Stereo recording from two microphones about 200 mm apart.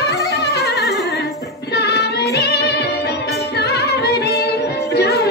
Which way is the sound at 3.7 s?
55° left (ahead or behind).